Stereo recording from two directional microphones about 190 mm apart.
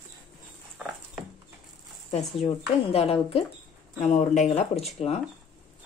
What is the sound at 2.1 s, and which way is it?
Speech, 35° left (ahead or behind).